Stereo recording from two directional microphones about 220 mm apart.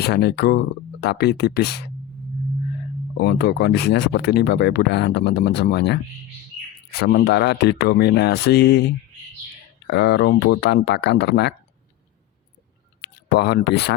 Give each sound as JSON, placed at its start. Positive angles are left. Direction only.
{"t": 0.0, "sound": "speech", "side_deg": 50}
{"t": 3.2, "sound": "speech", "side_deg": 45}
{"t": 7.0, "sound": "speech", "side_deg": 50}
{"t": 13.0, "sound": "a sound", "side_deg": 50}